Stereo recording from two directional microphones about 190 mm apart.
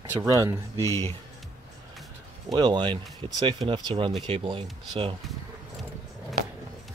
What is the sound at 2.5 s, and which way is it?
Speech, 25° right (ahead or behind).